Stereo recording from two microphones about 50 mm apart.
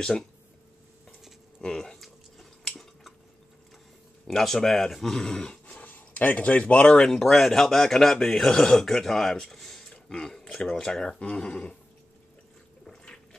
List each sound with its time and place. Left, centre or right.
1.6 s a sound: centre
2.8 s dishes: centre
4.3 s speech: centre
5.8 s speech: left
7.1 s speech: centre
12.8 s liquid: centre